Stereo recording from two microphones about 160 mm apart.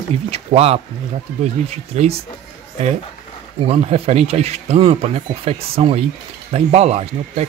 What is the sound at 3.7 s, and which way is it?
Speech, 40° right (ahead or behind).